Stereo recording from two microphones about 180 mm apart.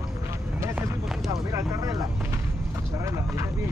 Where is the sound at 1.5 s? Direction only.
20° right (ahead or behind).